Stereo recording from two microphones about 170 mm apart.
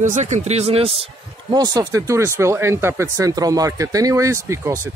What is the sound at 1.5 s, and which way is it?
Speech, 25° right (ahead or behind).